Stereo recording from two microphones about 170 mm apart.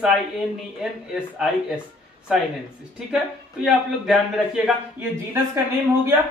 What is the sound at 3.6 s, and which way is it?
Speech, centre (ahead or behind).